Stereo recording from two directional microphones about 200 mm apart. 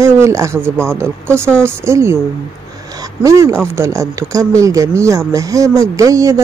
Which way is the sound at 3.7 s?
15° right (ahead or behind).